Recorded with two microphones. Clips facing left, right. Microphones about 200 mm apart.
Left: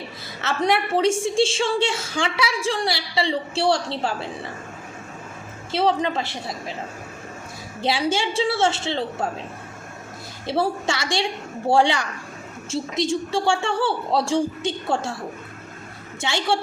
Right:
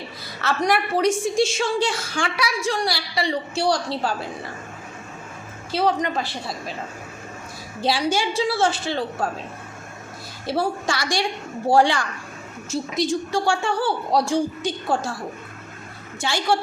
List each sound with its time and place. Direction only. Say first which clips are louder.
0.4 s a woman's voice: even; 25° left (ahead or behind)
5.7 s a woman's voice: left 1 dB; 25° left (ahead or behind)
7.8 s a woman's voice: right 1 dB; 20° left (ahead or behind)
10.4 s a woman's voice: left 1 dB; 25° left (ahead or behind)
16.2 s a woman's voice: right 1 dB; 20° left (ahead or behind)